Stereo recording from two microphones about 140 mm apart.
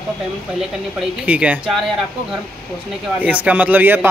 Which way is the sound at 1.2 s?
10° right (ahead or behind).